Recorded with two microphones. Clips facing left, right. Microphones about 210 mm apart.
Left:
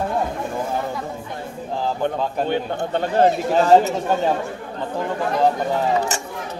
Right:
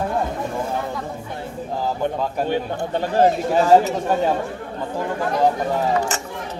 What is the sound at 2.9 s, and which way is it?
Speech, 10° right (ahead or behind).